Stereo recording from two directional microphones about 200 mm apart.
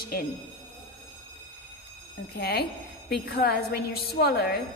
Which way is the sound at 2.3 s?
50° left (ahead or behind).